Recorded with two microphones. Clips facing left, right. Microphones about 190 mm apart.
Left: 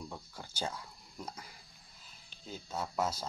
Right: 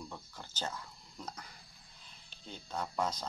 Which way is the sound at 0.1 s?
10° left (ahead or behind).